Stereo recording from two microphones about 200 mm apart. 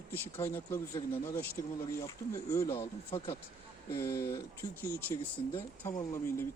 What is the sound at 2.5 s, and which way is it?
Speech, 15° left (ahead or behind).